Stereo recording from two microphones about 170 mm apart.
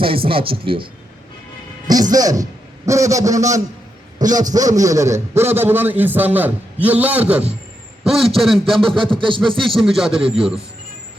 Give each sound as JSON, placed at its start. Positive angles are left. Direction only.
{"t": 0.0, "sound": "speech", "side_deg": -30}
{"t": 2.1, "sound": "a man's voice", "side_deg": -20}
{"t": 8.9, "sound": "a sound", "side_deg": -30}
{"t": 9.7, "sound": "a man's voice", "side_deg": 0}